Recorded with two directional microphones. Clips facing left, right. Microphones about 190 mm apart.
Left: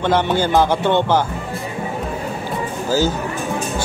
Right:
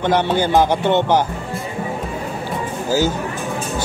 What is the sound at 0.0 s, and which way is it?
A man's voice, 15° right (ahead or behind).